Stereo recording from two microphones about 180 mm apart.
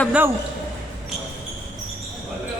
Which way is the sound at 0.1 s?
10° right (ahead or behind).